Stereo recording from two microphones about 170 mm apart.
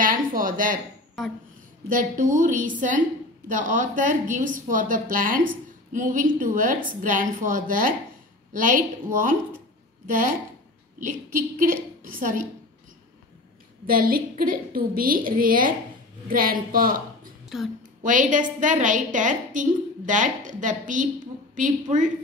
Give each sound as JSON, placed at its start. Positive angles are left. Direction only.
{"t": 0.0, "sound": "a woman's voice", "side_deg": -55}
{"t": 1.9, "sound": "a woman's voice", "side_deg": -50}
{"t": 13.8, "sound": "a woman's voice", "side_deg": -55}
{"t": 17.5, "sound": "speech", "side_deg": 0}
{"t": 18.0, "sound": "a woman's voice", "side_deg": -50}